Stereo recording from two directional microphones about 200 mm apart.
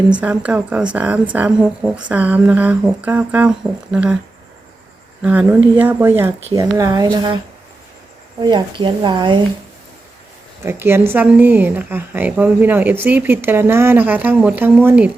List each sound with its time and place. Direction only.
0.1 s a woman's voice: 5° right (ahead or behind)
5.2 s a woman's voice: 5° right (ahead or behind)
8.4 s speech: 20° right (ahead or behind)
10.6 s a woman's voice: 10° right (ahead or behind)